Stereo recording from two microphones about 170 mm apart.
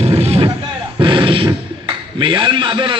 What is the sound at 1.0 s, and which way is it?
Beatboxing, 30° right (ahead or behind).